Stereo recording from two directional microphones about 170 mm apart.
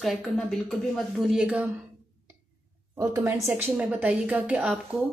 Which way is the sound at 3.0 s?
15° right (ahead or behind).